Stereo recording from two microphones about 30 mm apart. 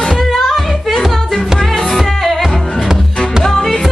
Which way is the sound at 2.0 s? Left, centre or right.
Centre.